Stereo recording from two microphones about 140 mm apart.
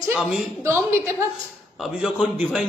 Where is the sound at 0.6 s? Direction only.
15° right (ahead or behind).